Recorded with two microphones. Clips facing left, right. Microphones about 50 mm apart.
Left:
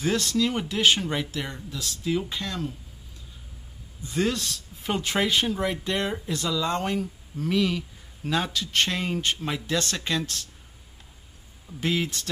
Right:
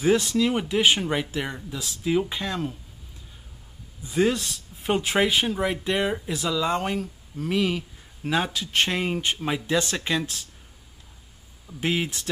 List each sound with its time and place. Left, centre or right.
0.0 s speech: centre
4.0 s speech: centre
11.6 s speech: centre